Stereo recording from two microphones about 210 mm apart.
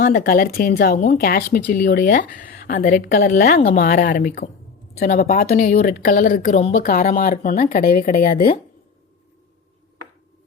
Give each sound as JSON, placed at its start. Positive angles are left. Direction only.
{"t": 0.0, "sound": "a woman's voice", "side_deg": 45}